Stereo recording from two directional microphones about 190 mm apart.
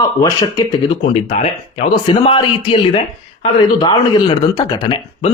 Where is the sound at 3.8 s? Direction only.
25° left (ahead or behind).